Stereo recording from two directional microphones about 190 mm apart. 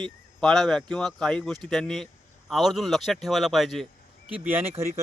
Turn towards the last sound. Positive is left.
turn(degrees=-10)  # may be behind; listen again after turning